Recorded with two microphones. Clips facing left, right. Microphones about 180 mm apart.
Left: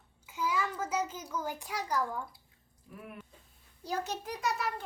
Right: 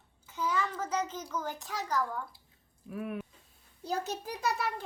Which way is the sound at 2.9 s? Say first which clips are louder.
Right 10 dB; 75° right (ahead or behind).